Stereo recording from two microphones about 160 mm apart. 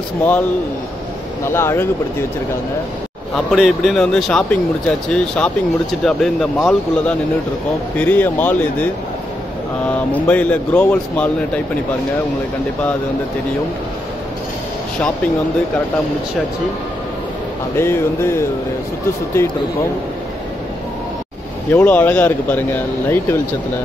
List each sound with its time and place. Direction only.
0.2 s speech: 10° left (ahead or behind)
3.3 s speech: centre (ahead or behind)
9.8 s speech: 10° left (ahead or behind)
17.7 s speech: 15° left (ahead or behind)
21.7 s speech: 10° left (ahead or behind)